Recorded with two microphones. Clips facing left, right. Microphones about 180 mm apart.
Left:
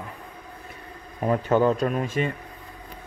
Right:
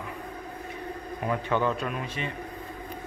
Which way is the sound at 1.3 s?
40° left (ahead or behind).